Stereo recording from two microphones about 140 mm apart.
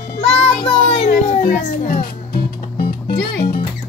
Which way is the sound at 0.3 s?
45° left (ahead or behind).